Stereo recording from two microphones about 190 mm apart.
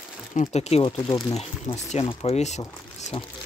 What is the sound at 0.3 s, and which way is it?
Speech, 40° left (ahead or behind).